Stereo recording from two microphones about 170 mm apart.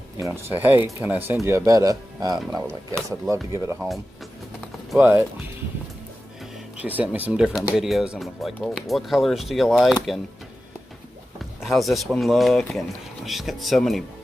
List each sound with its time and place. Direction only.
0.2 s speech: 15° right (ahead or behind)
4.9 s speech: 10° right (ahead or behind)
6.8 s speech: 10° right (ahead or behind)
11.3 s speech: centre (ahead or behind)